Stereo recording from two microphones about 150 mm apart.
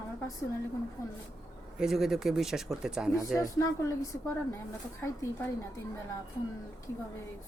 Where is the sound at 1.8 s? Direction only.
Centre (ahead or behind).